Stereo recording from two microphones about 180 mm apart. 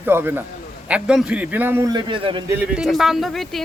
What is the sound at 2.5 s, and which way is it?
Speech, 5° right (ahead or behind).